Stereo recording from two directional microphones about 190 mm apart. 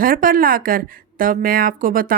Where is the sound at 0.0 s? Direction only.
50° right (ahead or behind).